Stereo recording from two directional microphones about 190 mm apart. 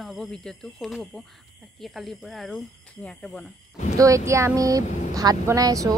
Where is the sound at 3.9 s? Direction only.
15° right (ahead or behind).